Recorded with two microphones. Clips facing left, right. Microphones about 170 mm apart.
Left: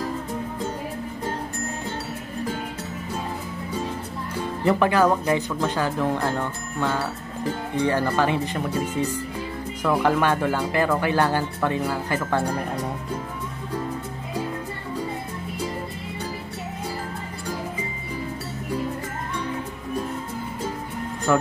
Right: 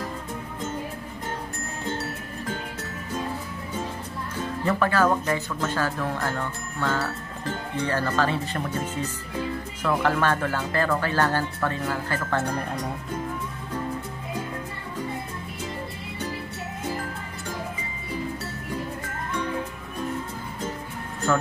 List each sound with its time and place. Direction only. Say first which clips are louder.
4.6 s speech: left 3 dB; 15° left (ahead or behind)
21.3 s speech: left 3 dB; 15° left (ahead or behind)